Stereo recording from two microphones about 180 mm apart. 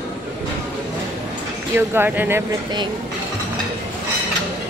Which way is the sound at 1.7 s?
10° right (ahead or behind).